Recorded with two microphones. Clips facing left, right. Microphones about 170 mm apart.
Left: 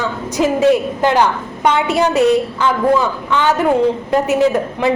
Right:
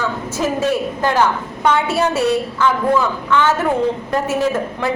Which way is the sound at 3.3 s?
15° left (ahead or behind).